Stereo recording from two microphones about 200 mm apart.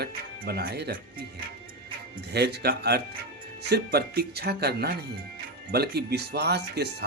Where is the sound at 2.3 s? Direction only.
55° right (ahead or behind).